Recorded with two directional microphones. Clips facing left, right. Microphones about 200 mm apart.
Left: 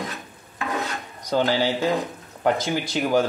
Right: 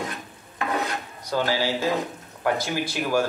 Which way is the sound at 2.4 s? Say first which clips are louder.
Left 2 dB; 20° left (ahead or behind).